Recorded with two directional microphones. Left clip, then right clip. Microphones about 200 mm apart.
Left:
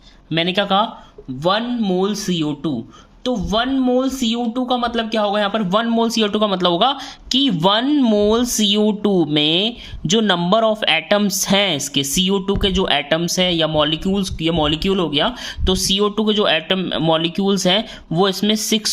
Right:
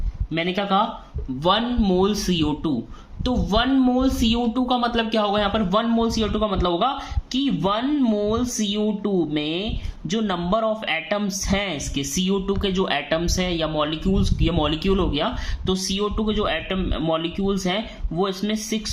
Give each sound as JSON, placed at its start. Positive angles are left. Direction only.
{"t": 0.3, "sound": "a man's voice", "side_deg": 45}
{"t": 1.5, "sound": "a man's voice", "side_deg": 25}